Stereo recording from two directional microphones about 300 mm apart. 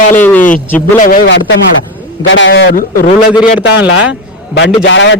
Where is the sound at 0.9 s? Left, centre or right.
Left.